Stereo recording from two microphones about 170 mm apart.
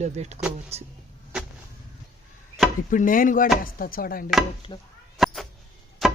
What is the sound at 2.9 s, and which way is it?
Chopping, 50° left (ahead or behind).